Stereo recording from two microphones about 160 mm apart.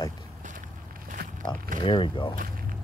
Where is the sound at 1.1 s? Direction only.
55° right (ahead or behind).